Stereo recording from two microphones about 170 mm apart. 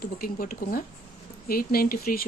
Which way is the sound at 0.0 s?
60° left (ahead or behind).